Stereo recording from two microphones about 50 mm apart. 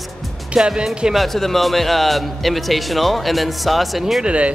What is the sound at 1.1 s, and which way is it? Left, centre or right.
A man's voice, centre.